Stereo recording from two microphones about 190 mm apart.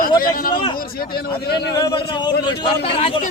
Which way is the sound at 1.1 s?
55° left (ahead or behind).